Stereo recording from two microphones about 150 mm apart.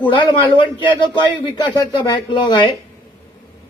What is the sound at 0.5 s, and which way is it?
Speech, 30° left (ahead or behind).